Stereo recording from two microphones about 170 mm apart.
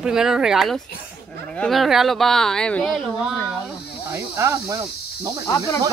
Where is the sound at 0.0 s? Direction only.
5° right (ahead or behind).